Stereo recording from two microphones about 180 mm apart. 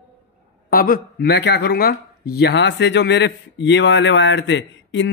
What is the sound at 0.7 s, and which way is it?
A man's voice, 55° left (ahead or behind).